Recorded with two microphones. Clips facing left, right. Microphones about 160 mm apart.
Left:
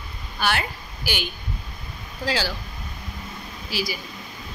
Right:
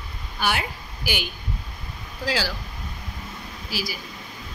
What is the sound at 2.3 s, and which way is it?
Speech, 5° right (ahead or behind).